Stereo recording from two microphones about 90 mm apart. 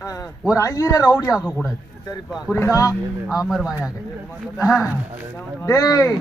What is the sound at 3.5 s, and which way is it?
Speech, 5° right (ahead or behind).